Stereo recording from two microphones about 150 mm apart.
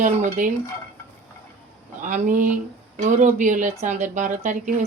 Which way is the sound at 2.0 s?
60° right (ahead or behind).